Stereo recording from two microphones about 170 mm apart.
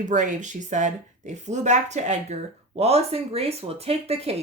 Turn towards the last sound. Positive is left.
turn(degrees=-35)  # may be behind; listen again after turning